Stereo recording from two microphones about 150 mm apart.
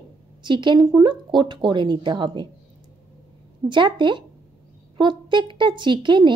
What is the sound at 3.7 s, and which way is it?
Speech, 30° right (ahead or behind).